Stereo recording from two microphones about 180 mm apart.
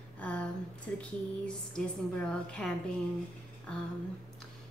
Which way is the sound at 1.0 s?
5° left (ahead or behind).